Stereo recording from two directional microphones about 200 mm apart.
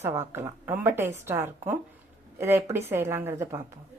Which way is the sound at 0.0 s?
15° right (ahead or behind).